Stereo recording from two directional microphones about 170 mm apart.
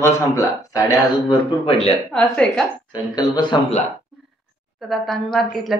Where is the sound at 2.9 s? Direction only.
25° left (ahead or behind).